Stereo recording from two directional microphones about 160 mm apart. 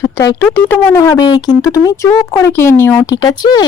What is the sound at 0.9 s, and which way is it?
A woman's voice, 25° left (ahead or behind).